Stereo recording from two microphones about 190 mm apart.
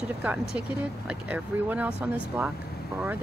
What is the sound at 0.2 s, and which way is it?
Speech, 5° right (ahead or behind).